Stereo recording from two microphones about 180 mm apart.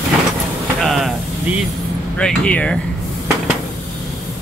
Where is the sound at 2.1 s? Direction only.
5° left (ahead or behind).